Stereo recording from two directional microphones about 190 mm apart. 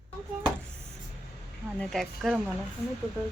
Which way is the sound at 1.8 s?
Centre (ahead or behind).